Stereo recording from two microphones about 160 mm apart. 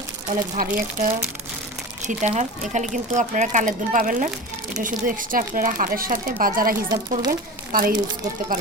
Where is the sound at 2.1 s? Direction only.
55° right (ahead or behind).